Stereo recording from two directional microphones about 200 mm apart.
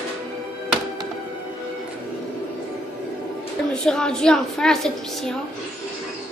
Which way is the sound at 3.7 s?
5° left (ahead or behind).